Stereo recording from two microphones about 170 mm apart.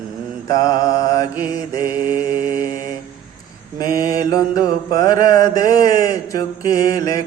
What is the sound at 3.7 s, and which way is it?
Mantra, 20° left (ahead or behind).